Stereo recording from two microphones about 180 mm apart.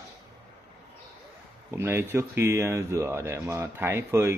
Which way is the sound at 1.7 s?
15° right (ahead or behind).